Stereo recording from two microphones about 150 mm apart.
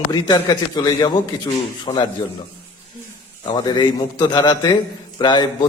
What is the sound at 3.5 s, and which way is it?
A man's voice, 30° left (ahead or behind).